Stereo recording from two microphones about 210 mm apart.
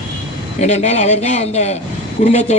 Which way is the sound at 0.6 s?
30° left (ahead or behind).